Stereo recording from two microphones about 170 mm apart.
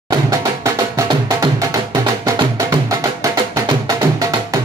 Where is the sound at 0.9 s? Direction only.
20° right (ahead or behind).